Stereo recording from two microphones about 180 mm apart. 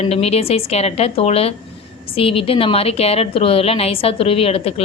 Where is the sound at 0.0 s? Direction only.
35° left (ahead or behind).